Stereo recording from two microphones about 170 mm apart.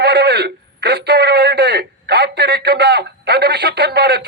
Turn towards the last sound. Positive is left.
turn(degrees=-75)  # may be behind; listen again after turning